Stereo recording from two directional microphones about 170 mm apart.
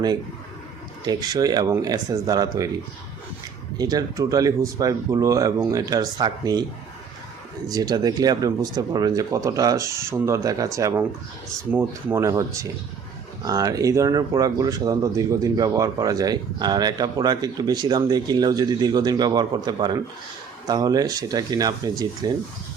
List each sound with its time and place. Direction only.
1.0 s speech: 25° right (ahead or behind)
3.8 s speech: 20° right (ahead or behind)
7.7 s speech: 20° right (ahead or behind)